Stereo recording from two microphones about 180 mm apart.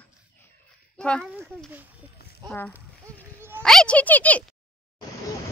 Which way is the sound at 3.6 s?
5° left (ahead or behind).